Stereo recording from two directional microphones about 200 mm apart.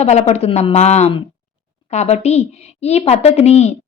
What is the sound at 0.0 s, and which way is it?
A woman's voice, 35° left (ahead or behind).